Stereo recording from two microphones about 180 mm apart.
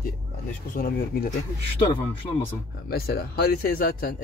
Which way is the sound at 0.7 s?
55° left (ahead or behind).